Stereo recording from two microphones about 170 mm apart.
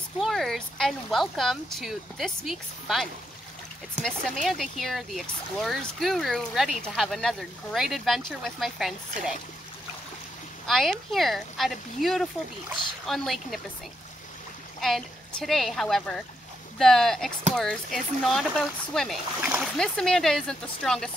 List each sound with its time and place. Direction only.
0.2 s speech: centre (ahead or behind)
4.0 s speech: 45° right (ahead or behind)
4.5 s speech: centre (ahead or behind)
10.7 s speech: centre (ahead or behind)
14.8 s speech: centre (ahead or behind)